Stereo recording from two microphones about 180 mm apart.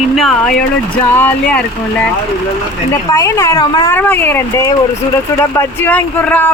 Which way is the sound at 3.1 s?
15° left (ahead or behind).